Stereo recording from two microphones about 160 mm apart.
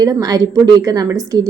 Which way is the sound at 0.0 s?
25° right (ahead or behind).